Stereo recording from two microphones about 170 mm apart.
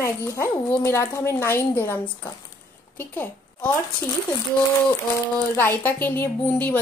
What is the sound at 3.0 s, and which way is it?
Speech, 10° left (ahead or behind).